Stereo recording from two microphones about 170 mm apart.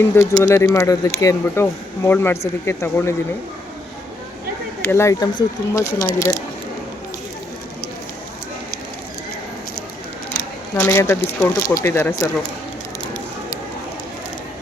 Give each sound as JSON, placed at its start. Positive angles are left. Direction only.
{"t": 0.0, "sound": "speech", "side_deg": 15}
{"t": 4.8, "sound": "speech", "side_deg": 15}
{"t": 10.8, "sound": "speech", "side_deg": 15}